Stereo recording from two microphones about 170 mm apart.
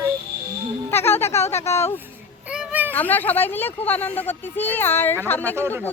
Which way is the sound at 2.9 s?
10° left (ahead or behind).